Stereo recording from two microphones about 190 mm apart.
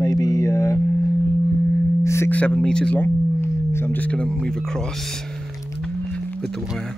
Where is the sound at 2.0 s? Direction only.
15° left (ahead or behind).